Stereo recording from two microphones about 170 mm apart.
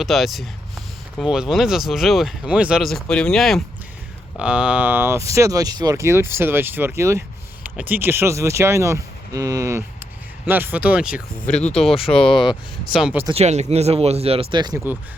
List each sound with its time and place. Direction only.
0.0 s speech: centre (ahead or behind)
12.0 s speech: 30° left (ahead or behind)
12.9 s speech: 5° right (ahead or behind)
13.3 s speech: 40° right (ahead or behind)